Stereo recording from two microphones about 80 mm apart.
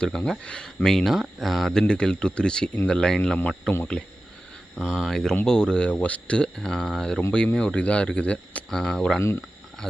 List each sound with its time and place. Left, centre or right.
0.0 s speech: centre
1.8 s speech: centre
4.7 s speech: centre